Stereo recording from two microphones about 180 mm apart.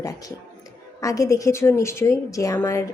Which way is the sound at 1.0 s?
20° left (ahead or behind).